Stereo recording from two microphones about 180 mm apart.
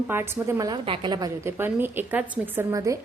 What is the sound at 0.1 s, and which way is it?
A woman's voice, 15° right (ahead or behind).